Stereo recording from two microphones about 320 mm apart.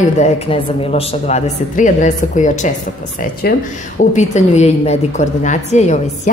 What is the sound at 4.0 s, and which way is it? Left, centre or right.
A woman's voice, left.